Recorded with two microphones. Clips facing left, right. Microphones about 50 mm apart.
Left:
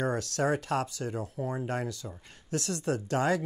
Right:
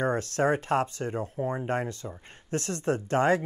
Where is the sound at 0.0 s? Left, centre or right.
Right.